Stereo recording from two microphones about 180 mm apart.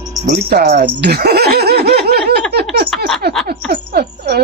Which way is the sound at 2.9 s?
Centre (ahead or behind).